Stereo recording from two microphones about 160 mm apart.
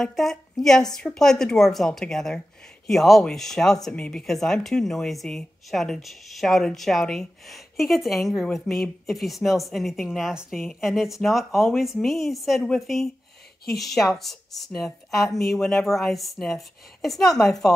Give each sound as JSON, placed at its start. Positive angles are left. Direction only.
{"t": 0.0, "sound": "speech", "side_deg": 0}